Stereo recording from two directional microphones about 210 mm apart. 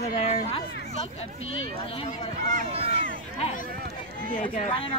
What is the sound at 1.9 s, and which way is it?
Speech, 25° left (ahead or behind).